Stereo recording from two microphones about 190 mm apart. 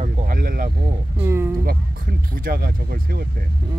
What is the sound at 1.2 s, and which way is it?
Speech, 15° right (ahead or behind).